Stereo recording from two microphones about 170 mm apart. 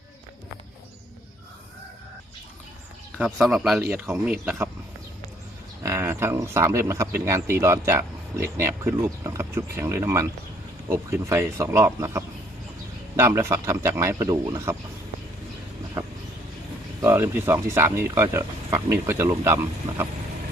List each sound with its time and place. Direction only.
3.2 s speech: 5° right (ahead or behind)
5.8 s speech: 15° right (ahead or behind)
16.0 s vehicle: 20° right (ahead or behind)
17.0 s speech: 15° right (ahead or behind)